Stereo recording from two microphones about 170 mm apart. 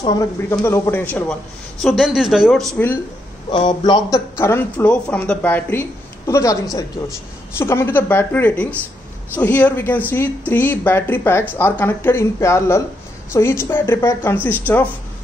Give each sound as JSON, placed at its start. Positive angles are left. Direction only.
{"t": 0.0, "sound": "speech", "side_deg": 20}
{"t": 1.8, "sound": "speech", "side_deg": 0}
{"t": 3.4, "sound": "speech", "side_deg": 25}